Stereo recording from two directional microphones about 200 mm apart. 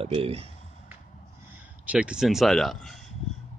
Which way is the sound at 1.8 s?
5° right (ahead or behind).